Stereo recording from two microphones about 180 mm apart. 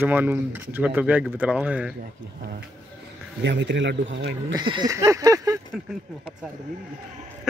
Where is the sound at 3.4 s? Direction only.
80° right.